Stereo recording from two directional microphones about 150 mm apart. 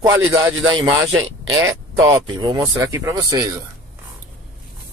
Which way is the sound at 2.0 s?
30° right (ahead or behind).